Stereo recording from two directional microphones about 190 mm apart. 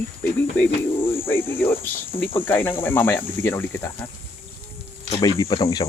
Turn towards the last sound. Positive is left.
turn(degrees=25)  # may be behind; listen again after turning